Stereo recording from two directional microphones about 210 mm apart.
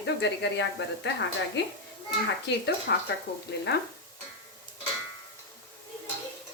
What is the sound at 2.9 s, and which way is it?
Frying, 50° left (ahead or behind).